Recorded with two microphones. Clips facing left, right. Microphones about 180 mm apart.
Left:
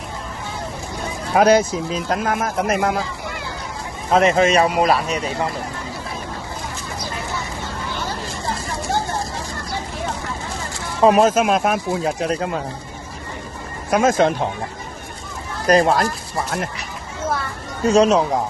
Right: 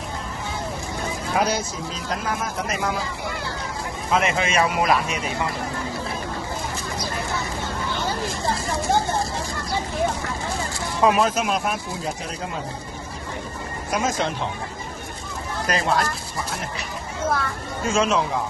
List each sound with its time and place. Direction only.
1.4 s speech: 60° left (ahead or behind)
4.1 s speech: 35° left (ahead or behind)
11.0 s speech: 40° left (ahead or behind); by 12.4 s 75° left (ahead or behind)
13.9 s speech: 55° left (ahead or behind)
15.6 s speech: 40° left (ahead or behind)
17.8 s speech: 40° left (ahead or behind)